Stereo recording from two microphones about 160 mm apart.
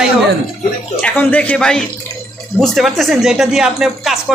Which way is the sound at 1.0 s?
10° left (ahead or behind).